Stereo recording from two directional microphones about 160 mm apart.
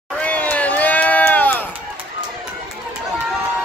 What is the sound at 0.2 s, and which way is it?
Run, 10° left (ahead or behind).